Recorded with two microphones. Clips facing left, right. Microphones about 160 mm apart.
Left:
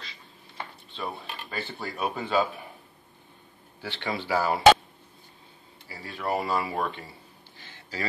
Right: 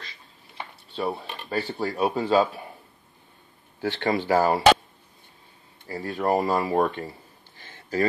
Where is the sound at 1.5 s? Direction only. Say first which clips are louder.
Right 9 dB; 40° right (ahead or behind).